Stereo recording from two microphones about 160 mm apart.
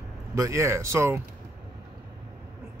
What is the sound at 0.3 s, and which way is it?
Speech, 20° right (ahead or behind).